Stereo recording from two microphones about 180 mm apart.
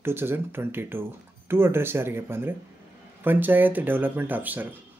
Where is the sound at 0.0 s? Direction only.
10° right (ahead or behind).